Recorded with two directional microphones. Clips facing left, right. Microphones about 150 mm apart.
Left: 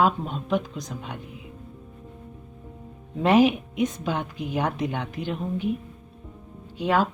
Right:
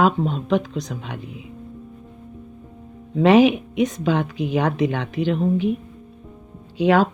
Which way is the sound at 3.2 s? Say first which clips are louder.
Right 5 dB; 85° right.